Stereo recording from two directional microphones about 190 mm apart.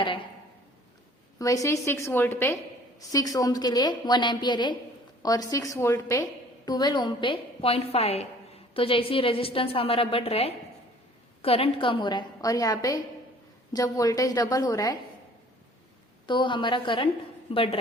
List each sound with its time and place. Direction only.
1.4 s a woman's voice: 15° left (ahead or behind)
16.2 s a woman's voice: 25° left (ahead or behind)